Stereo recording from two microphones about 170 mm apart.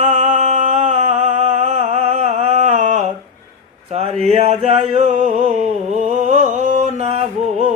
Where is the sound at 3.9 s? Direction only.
35° right (ahead or behind).